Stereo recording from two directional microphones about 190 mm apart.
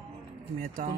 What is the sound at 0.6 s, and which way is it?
Speech, 45° right (ahead or behind).